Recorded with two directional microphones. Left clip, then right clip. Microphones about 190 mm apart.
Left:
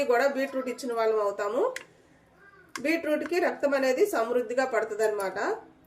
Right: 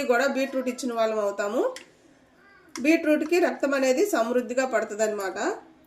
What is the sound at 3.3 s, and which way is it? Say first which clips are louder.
A woman's voice: right 2 dB; 35° right (ahead or behind).